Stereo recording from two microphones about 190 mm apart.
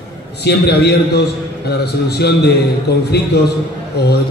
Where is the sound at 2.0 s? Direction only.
60° left (ahead or behind).